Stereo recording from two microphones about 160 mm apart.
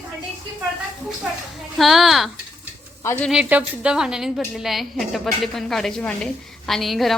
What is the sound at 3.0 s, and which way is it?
Speech, 15° left (ahead or behind).